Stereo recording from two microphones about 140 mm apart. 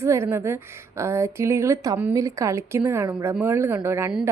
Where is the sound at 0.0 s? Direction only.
20° right (ahead or behind).